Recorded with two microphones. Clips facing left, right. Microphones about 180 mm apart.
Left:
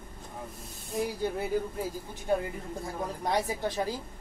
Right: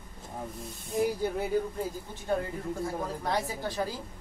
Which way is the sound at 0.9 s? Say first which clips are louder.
Right 2 dB; centre (ahead or behind).